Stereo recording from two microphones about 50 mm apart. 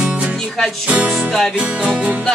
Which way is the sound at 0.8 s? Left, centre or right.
Right.